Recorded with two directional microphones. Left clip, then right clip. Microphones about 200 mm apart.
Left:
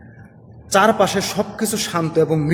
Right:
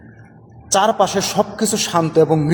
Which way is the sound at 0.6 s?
15° right (ahead or behind).